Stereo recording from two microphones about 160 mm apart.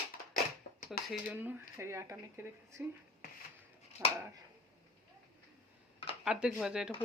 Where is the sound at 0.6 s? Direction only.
75° left (ahead or behind).